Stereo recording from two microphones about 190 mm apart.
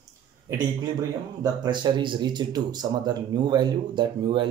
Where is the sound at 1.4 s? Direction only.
25° right (ahead or behind).